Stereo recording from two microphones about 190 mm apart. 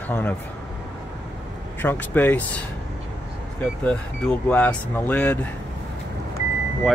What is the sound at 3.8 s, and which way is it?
Speech, 10° left (ahead or behind).